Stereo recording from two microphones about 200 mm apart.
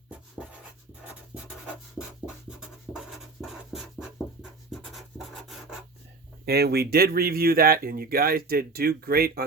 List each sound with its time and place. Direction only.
0.1 s writing: 5° right (ahead or behind)
2.0 s scratch: 5° right (ahead or behind)
6.4 s speech: 50° right (ahead or behind)